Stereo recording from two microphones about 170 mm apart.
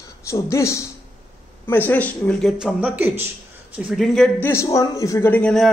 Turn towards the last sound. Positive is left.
turn(degrees=5)  # may be behind; listen again after turning